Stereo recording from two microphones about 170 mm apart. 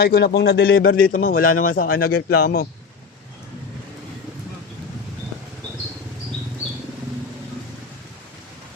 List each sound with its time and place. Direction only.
0.0 s a man's voice: 70° left (ahead or behind)